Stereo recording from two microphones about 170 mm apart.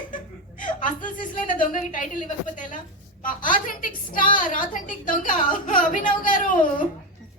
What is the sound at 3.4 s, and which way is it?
A woman's voice, 50° left (ahead or behind).